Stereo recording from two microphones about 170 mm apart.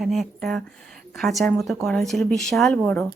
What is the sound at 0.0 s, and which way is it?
Speech, centre (ahead or behind).